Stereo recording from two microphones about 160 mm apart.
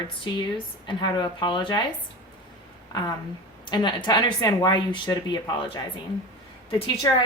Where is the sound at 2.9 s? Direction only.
25° left (ahead or behind).